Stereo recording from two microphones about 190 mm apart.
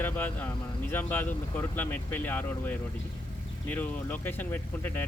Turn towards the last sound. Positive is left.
turn(degrees=10)  # may be behind; listen again after turning